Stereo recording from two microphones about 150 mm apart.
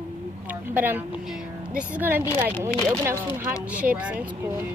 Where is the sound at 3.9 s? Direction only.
10° right (ahead or behind).